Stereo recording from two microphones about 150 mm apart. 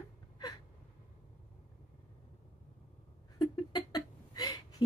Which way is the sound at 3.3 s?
30° left (ahead or behind).